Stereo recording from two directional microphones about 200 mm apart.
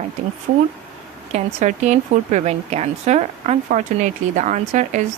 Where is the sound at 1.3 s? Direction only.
35° right (ahead or behind).